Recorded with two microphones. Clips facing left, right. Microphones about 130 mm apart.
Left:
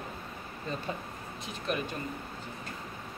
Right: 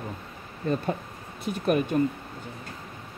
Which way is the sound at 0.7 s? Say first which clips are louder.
Right 9 dB; 60° right (ahead or behind).